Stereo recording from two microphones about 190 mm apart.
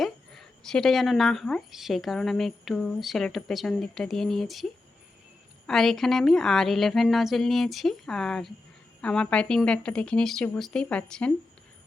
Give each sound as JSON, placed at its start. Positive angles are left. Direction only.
{"t": 0.0, "sound": "a woman's voice", "side_deg": 0}